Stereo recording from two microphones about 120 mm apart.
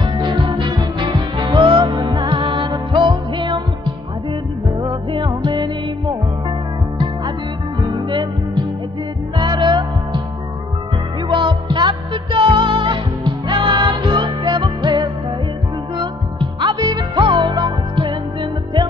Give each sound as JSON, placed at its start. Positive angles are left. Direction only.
{"t": 0.0, "sound": "music", "side_deg": -40}
{"t": 7.9, "sound": "music", "side_deg": -40}
{"t": 11.2, "sound": "music", "side_deg": -40}